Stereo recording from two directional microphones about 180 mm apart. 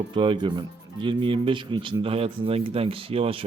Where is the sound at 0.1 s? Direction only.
25° right (ahead or behind).